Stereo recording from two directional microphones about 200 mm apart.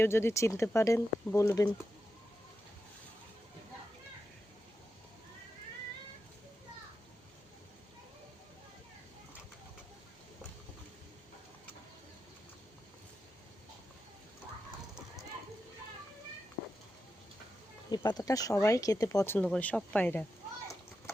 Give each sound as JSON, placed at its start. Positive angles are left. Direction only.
{"t": 0.0, "sound": "speech", "side_deg": 10}
{"t": 17.9, "sound": "speech", "side_deg": 20}